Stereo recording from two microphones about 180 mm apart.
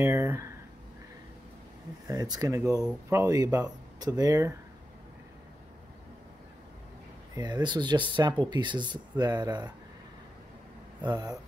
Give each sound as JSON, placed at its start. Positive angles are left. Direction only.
{"t": 0.0, "sound": "speech", "side_deg": -15}
{"t": 2.0, "sound": "speech", "side_deg": -20}
{"t": 7.3, "sound": "speech", "side_deg": -25}
{"t": 11.0, "sound": "speech", "side_deg": -20}